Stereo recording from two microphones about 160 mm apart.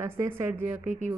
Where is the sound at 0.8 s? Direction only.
50° right (ahead or behind).